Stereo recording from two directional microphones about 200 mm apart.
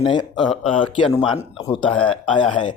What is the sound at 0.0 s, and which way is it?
Speech, 25° left (ahead or behind).